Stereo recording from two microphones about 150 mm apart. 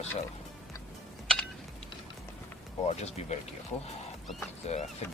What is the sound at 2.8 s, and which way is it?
Speech, 45° left (ahead or behind).